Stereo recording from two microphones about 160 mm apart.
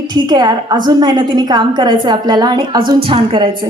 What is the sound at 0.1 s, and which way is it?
A woman's voice, 25° right (ahead or behind).